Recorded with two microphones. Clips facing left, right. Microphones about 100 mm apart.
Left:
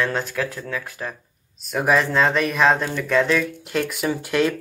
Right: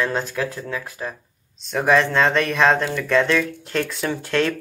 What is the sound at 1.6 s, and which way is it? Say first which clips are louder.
Speech: right 2 dB; 5° left (ahead or behind).